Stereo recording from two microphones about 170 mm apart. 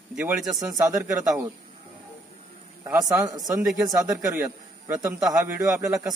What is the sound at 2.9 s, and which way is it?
A man's voice, 15° right (ahead or behind).